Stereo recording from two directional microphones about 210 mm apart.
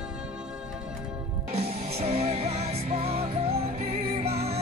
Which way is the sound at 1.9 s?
30° right (ahead or behind).